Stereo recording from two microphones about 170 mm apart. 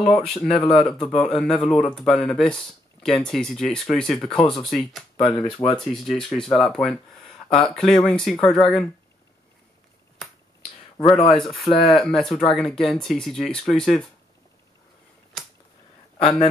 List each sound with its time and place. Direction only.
0.0 s speech: 5° left (ahead or behind)
11.0 s speech: 35° left (ahead or behind)
11.2 s speech: centre (ahead or behind)